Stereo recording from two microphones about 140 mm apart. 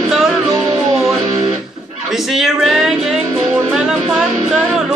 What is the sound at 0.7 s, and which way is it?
Music, 20° right (ahead or behind).